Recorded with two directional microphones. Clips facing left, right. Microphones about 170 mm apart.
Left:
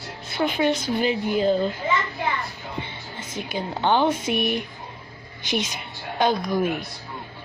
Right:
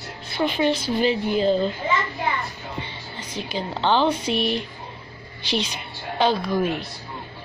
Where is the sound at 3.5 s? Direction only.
15° left (ahead or behind).